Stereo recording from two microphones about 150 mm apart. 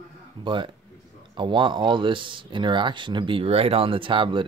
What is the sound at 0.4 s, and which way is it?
Speech, 30° right (ahead or behind).